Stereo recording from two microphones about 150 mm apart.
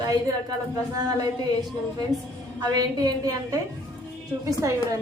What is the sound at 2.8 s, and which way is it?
Speech, 25° right (ahead or behind).